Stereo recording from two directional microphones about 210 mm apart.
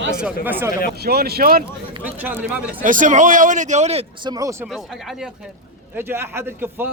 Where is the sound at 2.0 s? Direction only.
10° right (ahead or behind).